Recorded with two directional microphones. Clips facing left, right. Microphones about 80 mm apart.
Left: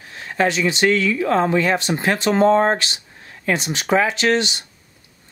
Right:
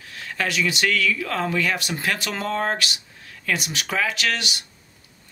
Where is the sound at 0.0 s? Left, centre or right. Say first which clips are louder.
Left 8 dB; left.